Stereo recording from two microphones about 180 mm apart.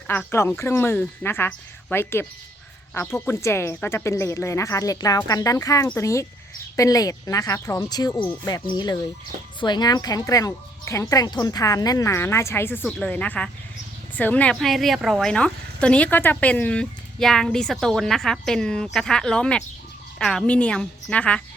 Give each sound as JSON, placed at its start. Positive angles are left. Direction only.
{"t": 0.1, "sound": "speech", "side_deg": 10}